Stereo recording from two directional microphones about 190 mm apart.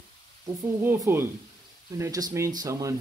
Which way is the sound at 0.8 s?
10° right (ahead or behind).